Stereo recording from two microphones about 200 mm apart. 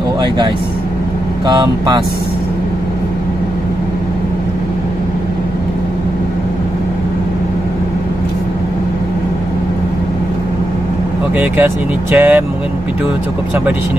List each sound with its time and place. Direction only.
1.5 s speech: 20° right (ahead or behind)
12.2 s speech: 10° right (ahead or behind)